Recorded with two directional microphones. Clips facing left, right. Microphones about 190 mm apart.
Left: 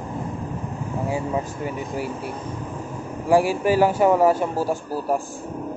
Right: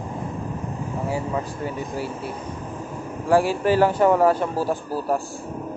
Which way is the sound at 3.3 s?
10° left (ahead or behind).